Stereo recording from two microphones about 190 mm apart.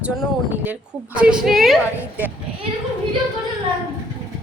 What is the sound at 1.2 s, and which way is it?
Speech, 5° right (ahead or behind).